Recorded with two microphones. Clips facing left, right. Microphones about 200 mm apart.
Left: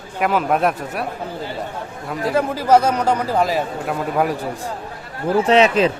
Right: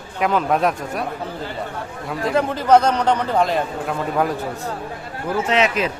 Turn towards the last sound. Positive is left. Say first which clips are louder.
# left 5 dB
turn(degrees=30)  # may be behind; listen again after turning